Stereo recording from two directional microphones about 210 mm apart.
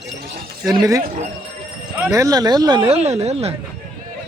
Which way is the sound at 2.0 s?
15° right (ahead or behind).